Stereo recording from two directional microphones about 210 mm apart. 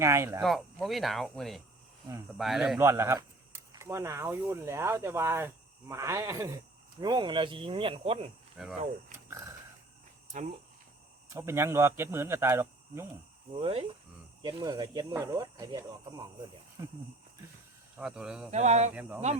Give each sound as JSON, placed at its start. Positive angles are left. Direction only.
{"t": 0.0, "sound": "speech", "side_deg": -15}
{"t": 0.4, "sound": "speech", "side_deg": 0}
{"t": 2.7, "sound": "speech", "side_deg": -15}
{"t": 8.6, "sound": "speech", "side_deg": 0}
{"t": 9.1, "sound": "a sound", "side_deg": -15}
{"t": 11.3, "sound": "speech", "side_deg": -10}
{"t": 13.5, "sound": "speech", "side_deg": -25}
{"t": 17.9, "sound": "speech", "side_deg": -5}
{"t": 18.5, "sound": "speech", "side_deg": -30}